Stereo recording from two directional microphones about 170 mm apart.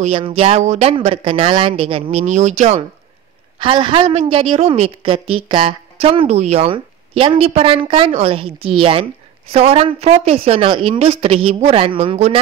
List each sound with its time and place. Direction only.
0.0 s a woman's voice: 35° right (ahead or behind)
3.5 s a woman's voice: 30° right (ahead or behind)